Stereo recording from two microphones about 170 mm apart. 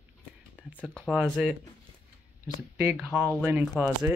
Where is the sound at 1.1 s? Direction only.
5° right (ahead or behind).